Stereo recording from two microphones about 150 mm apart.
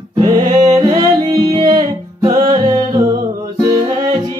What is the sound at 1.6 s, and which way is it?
Music, 35° right (ahead or behind).